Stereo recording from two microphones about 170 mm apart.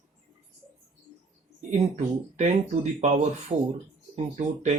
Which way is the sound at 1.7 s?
45° right (ahead or behind).